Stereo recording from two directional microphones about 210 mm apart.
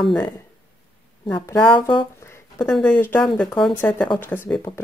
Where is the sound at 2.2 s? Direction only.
15° left (ahead or behind).